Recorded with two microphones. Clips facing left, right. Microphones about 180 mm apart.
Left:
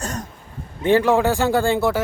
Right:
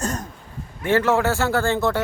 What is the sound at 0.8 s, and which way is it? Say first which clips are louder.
Speech: left 3 dB; 15° left (ahead or behind).